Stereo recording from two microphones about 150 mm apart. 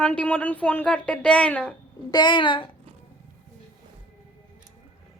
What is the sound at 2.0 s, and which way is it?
Speech, 30° left (ahead or behind).